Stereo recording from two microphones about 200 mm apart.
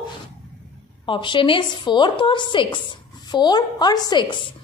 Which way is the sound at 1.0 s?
25° left (ahead or behind).